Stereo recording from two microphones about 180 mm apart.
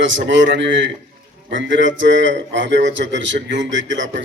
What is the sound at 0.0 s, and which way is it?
A man's voice, 90° right.